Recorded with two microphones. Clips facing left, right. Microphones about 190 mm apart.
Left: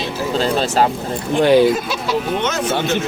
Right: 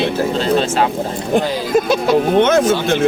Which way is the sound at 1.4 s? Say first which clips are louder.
Left 13 dB; 70° left (ahead or behind).